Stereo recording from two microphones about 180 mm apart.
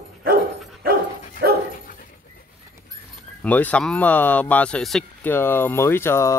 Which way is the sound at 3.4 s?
10° left (ahead or behind).